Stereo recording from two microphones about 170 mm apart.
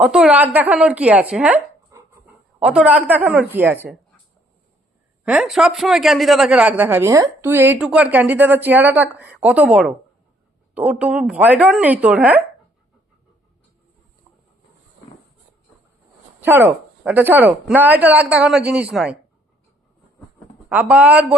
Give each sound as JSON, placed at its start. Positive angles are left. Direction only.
{"t": 0.0, "sound": "a man's voice", "side_deg": -5}
{"t": 1.9, "sound": "dog", "side_deg": -15}
{"t": 2.6, "sound": "a man's voice", "side_deg": -5}
{"t": 5.2, "sound": "a man's voice", "side_deg": -5}
{"t": 16.4, "sound": "a man's voice", "side_deg": -10}
{"t": 20.7, "sound": "a man's voice", "side_deg": -10}